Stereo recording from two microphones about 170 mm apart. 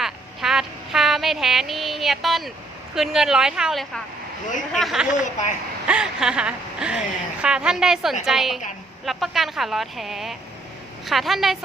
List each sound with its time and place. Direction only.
0.0 s a sound: centre (ahead or behind)
2.9 s speech: 5° right (ahead or behind)
5.1 s a woman's voice: 45° left (ahead or behind)
5.9 s speech: 5° right (ahead or behind)